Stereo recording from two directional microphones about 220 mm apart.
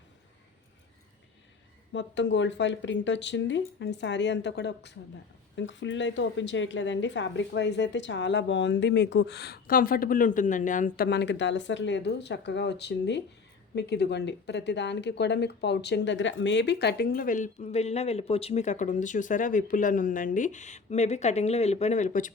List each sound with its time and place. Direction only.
1.9 s a woman's voice: 55° left (ahead or behind); by 22.3 s 35° left (ahead or behind)